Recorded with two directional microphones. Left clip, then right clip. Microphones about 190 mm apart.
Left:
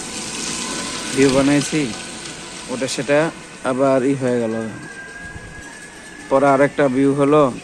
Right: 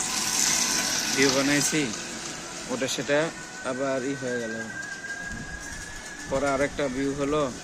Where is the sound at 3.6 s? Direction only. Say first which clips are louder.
Left 12 dB; 35° left (ahead or behind).